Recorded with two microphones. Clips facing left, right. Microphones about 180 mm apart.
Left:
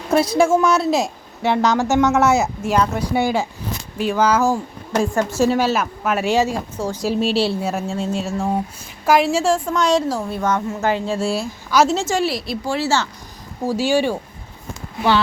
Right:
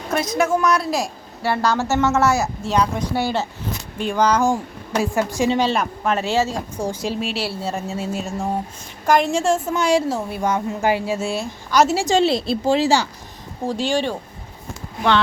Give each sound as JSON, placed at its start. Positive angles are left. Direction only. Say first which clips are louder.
{"t": 0.1, "sound": "a woman's voice", "louder": "left 5 dB", "side_deg": 30}
{"t": 2.7, "sound": "a woman's voice", "louder": "left 1 dB", "side_deg": 5}
{"t": 4.9, "sound": "a sound", "louder": "left 2 dB", "side_deg": -15}
{"t": 5.5, "sound": "speech", "louder": "left 1 dB", "side_deg": 5}
{"t": 6.8, "sound": "a sound", "louder": "right 1 dB", "side_deg": -15}
{"t": 7.2, "sound": "a woman's voice", "louder": "left 7 dB", "side_deg": 30}
{"t": 7.5, "sound": "speech", "louder": "left 3 dB", "side_deg": 10}
{"t": 7.9, "sound": "a woman's voice", "louder": "left 3 dB", "side_deg": -5}
{"t": 10.2, "sound": "a sound", "louder": "left 1 dB", "side_deg": -10}
{"t": 11.3, "sound": "a woman's voice", "louder": "right 1 dB", "side_deg": 0}
{"t": 11.9, "sound": "speech", "louder": "right 3 dB", "side_deg": -20}
{"t": 13.7, "sound": "speech", "louder": "left 3 dB", "side_deg": 5}